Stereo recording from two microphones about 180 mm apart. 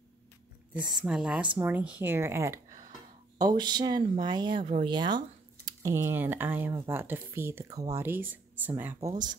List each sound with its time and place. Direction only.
0.7 s speech: 5° right (ahead or behind)